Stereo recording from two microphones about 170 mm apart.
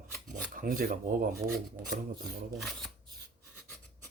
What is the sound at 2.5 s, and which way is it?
Speech, centre (ahead or behind).